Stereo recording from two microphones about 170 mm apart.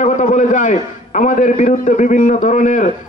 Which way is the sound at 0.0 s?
45° left (ahead or behind).